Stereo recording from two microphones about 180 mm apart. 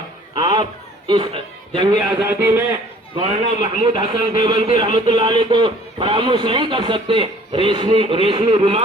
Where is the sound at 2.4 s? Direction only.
15° right (ahead or behind).